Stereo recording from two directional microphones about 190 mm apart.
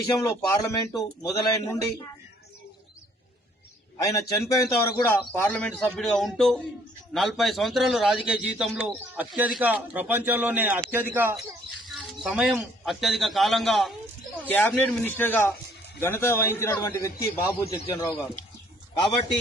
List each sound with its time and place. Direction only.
0.2 s a man's voice: 15° left (ahead or behind)
3.9 s a man's voice: 20° left (ahead or behind)